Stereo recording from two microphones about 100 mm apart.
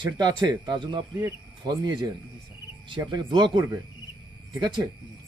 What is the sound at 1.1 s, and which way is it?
Speech, 40° right (ahead or behind).